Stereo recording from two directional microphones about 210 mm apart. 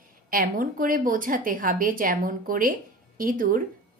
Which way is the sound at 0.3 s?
40° right (ahead or behind).